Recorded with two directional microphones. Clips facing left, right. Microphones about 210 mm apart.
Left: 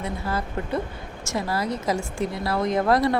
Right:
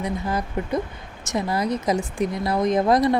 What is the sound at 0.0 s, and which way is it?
A woman's voice, 15° right (ahead or behind).